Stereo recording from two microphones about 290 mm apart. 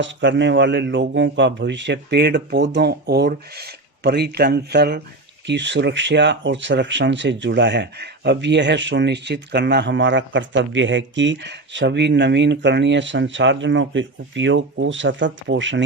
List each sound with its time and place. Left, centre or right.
0.0 s speech: right